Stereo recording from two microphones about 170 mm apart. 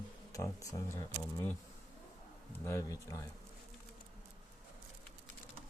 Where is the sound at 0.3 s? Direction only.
20° left (ahead or behind).